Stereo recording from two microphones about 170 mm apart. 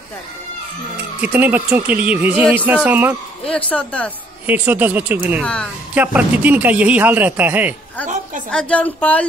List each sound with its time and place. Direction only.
1.2 s speech: 10° right (ahead or behind)
3.4 s a woman's voice: 10° left (ahead or behind)
4.5 s speech: 10° right (ahead or behind)
5.4 s a woman's voice: 5° left (ahead or behind)
5.9 s speech: 10° right (ahead or behind)
8.5 s a woman's voice: 5° left (ahead or behind)